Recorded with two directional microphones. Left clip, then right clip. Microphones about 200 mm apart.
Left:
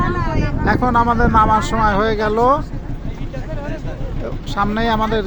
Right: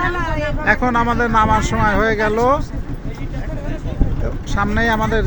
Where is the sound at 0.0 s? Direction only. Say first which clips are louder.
Right 1 dB; 60° right (ahead or behind).